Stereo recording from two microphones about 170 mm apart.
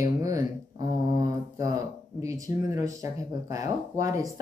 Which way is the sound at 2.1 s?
20° right (ahead or behind).